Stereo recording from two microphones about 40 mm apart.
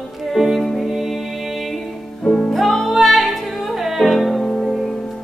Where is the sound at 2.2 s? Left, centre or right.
Centre.